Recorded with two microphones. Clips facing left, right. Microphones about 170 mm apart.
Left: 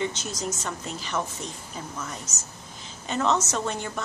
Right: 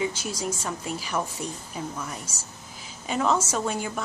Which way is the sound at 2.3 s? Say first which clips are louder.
Even; 30° right (ahead or behind).